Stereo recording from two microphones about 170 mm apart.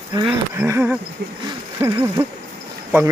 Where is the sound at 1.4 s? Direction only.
25° right (ahead or behind).